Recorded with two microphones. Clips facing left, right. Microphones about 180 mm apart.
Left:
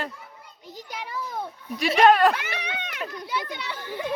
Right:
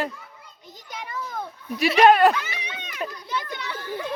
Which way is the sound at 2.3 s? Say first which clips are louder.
Right 1 dB; 60° left (ahead or behind).